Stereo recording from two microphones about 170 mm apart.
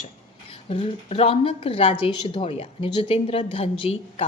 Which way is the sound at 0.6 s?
30° left (ahead or behind).